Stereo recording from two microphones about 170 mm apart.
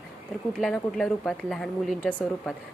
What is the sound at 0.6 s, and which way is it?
Speech, 5° left (ahead or behind).